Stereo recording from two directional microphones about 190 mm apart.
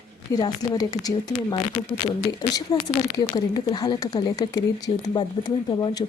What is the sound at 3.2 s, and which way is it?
Speech, 20° left (ahead or behind).